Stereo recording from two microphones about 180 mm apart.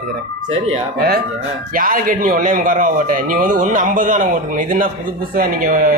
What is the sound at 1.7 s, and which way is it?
A man's voice, 50° right (ahead or behind).